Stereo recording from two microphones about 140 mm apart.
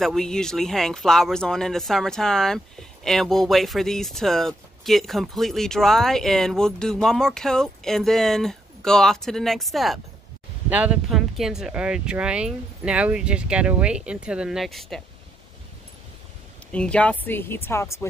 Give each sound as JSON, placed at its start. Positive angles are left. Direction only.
{"t": 0.0, "sound": "speech", "side_deg": 5}
{"t": 16.7, "sound": "speech", "side_deg": 10}